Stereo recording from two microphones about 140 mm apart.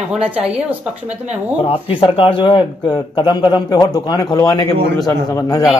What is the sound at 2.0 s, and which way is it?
A man's voice, 40° left (ahead or behind).